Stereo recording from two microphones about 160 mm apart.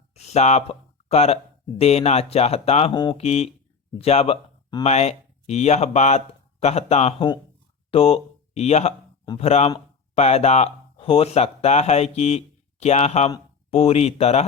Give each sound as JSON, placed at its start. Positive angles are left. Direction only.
{"t": 0.1, "sound": "speech", "side_deg": 45}
{"t": 2.9, "sound": "speech", "side_deg": 30}